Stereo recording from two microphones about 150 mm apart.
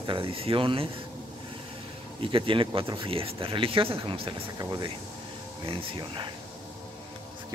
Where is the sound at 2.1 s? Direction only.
35° right (ahead or behind).